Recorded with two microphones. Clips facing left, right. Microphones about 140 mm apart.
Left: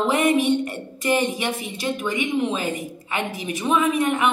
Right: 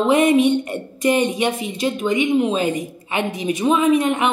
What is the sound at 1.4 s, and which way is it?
A woman's voice, 25° right (ahead or behind).